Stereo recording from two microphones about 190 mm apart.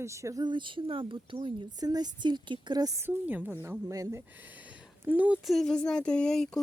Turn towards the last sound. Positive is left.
turn(degrees=5)  # may be behind; listen again after turning